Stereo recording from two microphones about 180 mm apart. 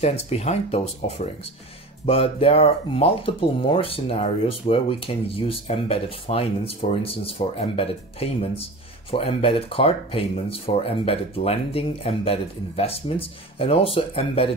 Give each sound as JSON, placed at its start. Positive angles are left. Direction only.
{"t": 0.0, "sound": "speech", "side_deg": 35}